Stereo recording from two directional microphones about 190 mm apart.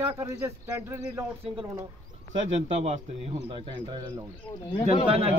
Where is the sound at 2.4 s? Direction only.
35° right (ahead or behind).